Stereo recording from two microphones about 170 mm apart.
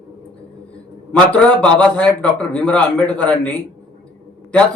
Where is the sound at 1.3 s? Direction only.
5° left (ahead or behind).